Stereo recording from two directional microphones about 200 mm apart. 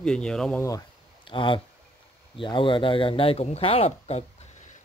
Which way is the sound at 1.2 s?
25° left (ahead or behind).